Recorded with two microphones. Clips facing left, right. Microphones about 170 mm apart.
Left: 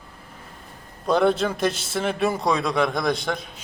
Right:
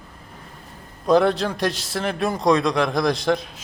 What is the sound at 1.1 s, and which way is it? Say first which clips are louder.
A man's voice: right 2 dB; centre (ahead or behind).